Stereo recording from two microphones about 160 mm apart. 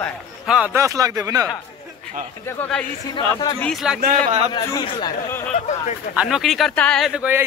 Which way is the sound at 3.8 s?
5° right (ahead or behind).